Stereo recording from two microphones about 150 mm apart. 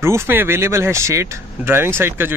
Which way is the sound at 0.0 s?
15° right (ahead or behind).